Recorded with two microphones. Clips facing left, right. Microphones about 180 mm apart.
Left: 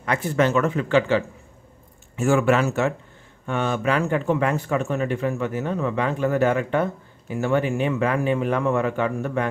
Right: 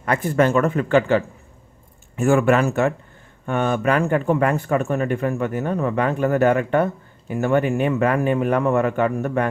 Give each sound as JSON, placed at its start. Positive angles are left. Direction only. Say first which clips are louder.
{"t": 0.0, "sound": "speech", "louder": "right 3 dB", "side_deg": -50}